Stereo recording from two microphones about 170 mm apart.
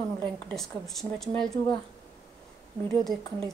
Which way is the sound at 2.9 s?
Centre (ahead or behind).